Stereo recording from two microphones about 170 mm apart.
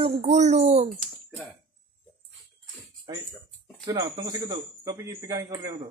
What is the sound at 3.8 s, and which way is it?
Speech, 20° right (ahead or behind).